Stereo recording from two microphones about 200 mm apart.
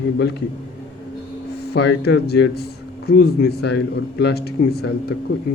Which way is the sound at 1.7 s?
55° left (ahead or behind).